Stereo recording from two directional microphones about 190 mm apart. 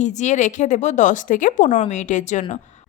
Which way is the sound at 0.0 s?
40° left (ahead or behind).